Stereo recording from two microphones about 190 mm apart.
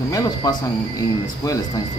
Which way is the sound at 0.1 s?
20° left (ahead or behind).